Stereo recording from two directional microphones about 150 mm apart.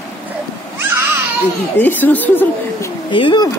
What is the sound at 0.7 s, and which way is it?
Babbling, 15° right (ahead or behind).